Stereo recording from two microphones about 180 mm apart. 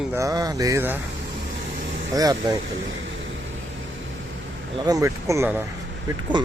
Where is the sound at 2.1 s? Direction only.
20° right (ahead or behind).